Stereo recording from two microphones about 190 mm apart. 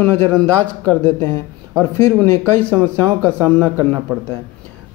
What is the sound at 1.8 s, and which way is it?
Speech, 10° left (ahead or behind).